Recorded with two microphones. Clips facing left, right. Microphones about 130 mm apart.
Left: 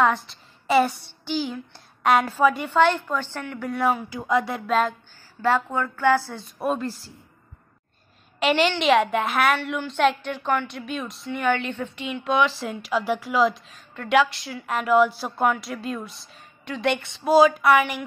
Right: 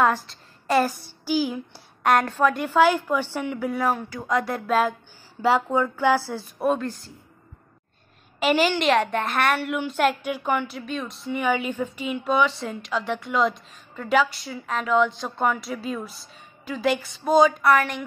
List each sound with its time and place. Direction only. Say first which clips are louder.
0.0 s speech: even; centre (ahead or behind)
3.6 s speech: left 3 dB; centre (ahead or behind)
5.4 s speech: right 2 dB; 15° right (ahead or behind)
6.6 s speech: right 2 dB; centre (ahead or behind)
8.4 s speech: even; centre (ahead or behind)